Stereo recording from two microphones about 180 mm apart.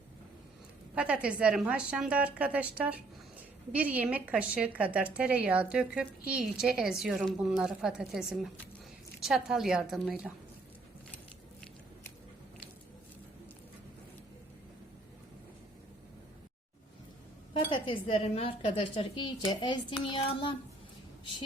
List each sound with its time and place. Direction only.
0.9 s a woman's voice: 5° right (ahead or behind)
17.7 s speech: 30° left (ahead or behind)